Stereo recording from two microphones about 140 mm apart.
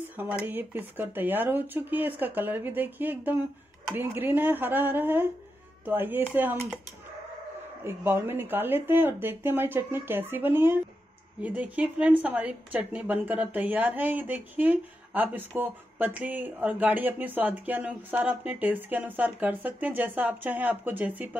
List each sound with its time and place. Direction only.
0.2 s a woman's voice: 15° right (ahead or behind)
7.8 s a woman's voice: 15° right (ahead or behind)